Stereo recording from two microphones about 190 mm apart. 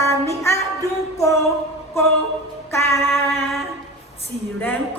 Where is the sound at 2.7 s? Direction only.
15° left (ahead or behind).